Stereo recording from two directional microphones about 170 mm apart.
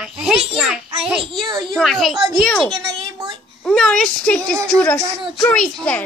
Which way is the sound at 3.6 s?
5° left (ahead or behind).